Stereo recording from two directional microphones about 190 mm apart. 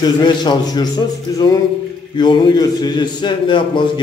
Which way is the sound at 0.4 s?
20° left (ahead or behind).